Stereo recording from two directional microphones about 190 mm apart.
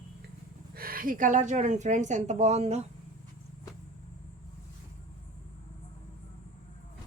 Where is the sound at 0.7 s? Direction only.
50° right (ahead or behind).